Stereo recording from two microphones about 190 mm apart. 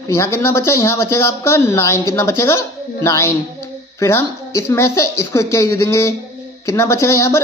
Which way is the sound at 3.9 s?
15° left (ahead or behind).